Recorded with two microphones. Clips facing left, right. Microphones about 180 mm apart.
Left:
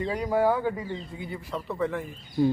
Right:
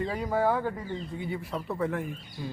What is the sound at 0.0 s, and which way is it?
Speech, centre (ahead or behind).